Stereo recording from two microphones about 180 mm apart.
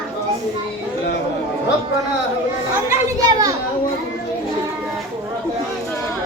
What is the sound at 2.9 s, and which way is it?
Children playing, 20° right (ahead or behind).